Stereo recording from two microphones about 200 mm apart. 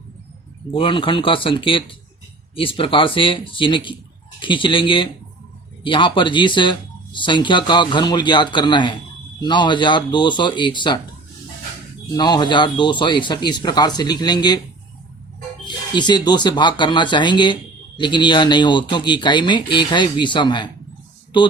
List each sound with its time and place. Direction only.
0.7 s speech: 25° left (ahead or behind)
12.1 s speech: 20° left (ahead or behind)
15.6 s speech: 20° left (ahead or behind)